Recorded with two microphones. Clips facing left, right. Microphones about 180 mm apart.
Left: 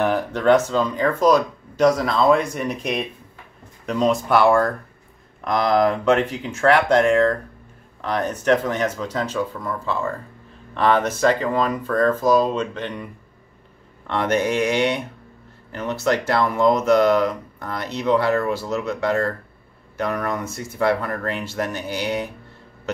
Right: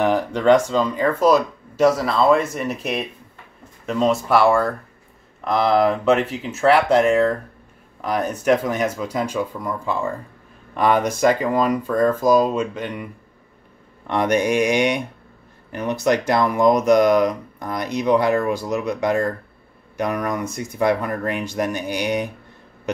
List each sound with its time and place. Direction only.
0.0 s speech: 10° right (ahead or behind)